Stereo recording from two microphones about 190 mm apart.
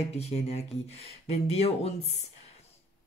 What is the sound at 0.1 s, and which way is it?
Speech, 35° left (ahead or behind).